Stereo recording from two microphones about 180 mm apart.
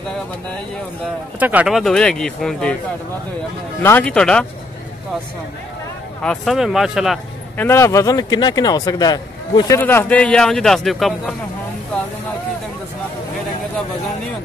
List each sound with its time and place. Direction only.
1.4 s speech: 10° right (ahead or behind)
3.8 s speech: 10° left (ahead or behind)
6.2 s speech: centre (ahead or behind)
7.5 s speech: 15° left (ahead or behind)